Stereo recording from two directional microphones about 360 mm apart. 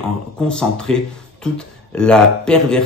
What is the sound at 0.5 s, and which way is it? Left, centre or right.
Speech, centre.